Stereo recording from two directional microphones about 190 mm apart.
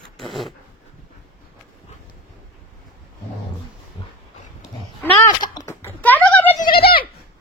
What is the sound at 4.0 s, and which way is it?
Dog, 25° left (ahead or behind).